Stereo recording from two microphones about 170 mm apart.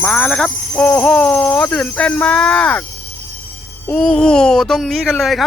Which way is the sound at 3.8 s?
5° left (ahead or behind).